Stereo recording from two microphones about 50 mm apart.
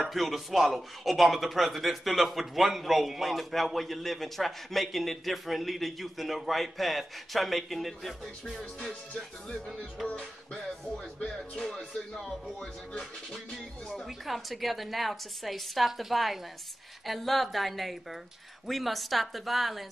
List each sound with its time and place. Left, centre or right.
0.1 s speech: centre
8.8 s music: centre
10.0 s speech: centre
11.3 s speech: centre
14.0 s speech: centre